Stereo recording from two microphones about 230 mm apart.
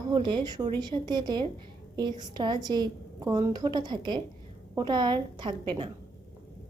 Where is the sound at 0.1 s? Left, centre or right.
Centre.